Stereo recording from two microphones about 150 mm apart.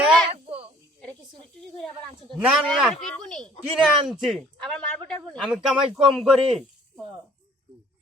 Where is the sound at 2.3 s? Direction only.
Centre (ahead or behind).